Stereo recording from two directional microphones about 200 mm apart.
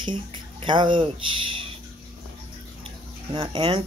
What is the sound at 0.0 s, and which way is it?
Speech, 25° right (ahead or behind).